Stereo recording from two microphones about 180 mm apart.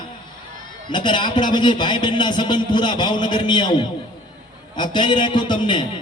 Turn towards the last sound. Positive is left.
turn(degrees=25)  # may be behind; listen again after turning